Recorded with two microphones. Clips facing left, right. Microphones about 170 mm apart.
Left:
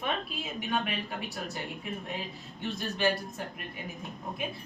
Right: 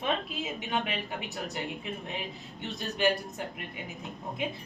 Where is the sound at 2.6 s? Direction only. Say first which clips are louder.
Even; 20° right (ahead or behind).